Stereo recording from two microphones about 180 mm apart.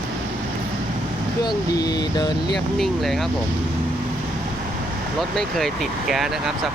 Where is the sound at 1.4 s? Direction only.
20° left (ahead or behind).